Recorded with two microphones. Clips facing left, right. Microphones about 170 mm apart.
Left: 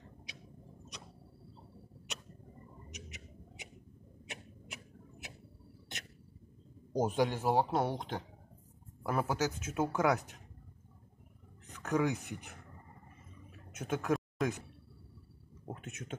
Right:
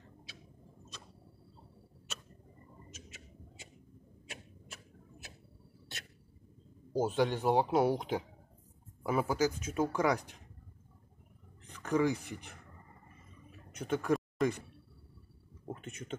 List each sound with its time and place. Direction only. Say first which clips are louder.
2.9 s a sound: left 2 dB; 20° left (ahead or behind)
6.9 s speech: right 1 dB; 15° left (ahead or behind); by 7.9 s centre (ahead or behind)
9.0 s speech: right 3 dB; centre (ahead or behind)
11.6 s speech: right 2 dB; 5° left (ahead or behind)
13.7 s a sound: right 2 dB; 5° left (ahead or behind)
15.6 s speech: right 1 dB; 5° left (ahead or behind)